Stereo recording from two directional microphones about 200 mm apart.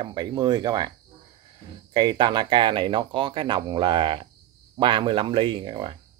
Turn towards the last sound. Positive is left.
turn(degrees=-25)  # may be behind; listen again after turning